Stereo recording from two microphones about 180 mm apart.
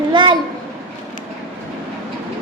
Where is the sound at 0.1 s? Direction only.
25° right (ahead or behind).